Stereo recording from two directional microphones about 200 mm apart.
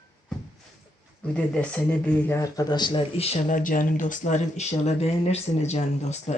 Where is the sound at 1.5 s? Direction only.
5° left (ahead or behind).